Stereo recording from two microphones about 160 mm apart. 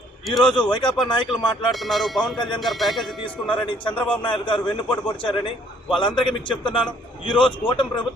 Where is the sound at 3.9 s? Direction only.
10° left (ahead or behind).